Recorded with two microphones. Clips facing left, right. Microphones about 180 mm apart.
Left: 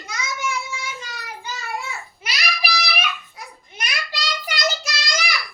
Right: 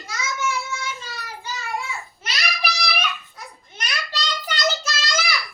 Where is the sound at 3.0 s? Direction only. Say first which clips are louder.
Even; 10° left (ahead or behind).